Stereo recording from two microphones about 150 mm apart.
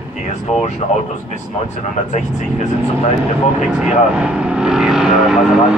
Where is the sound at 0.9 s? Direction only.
50° left (ahead or behind).